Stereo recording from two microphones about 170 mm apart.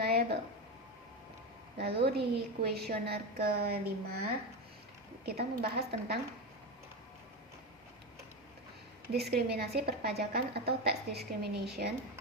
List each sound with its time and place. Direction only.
0.0 s a sound: 70° right (ahead or behind)
1.8 s a woman's voice: 70° right (ahead or behind)
9.1 s a woman's voice: 70° right (ahead or behind)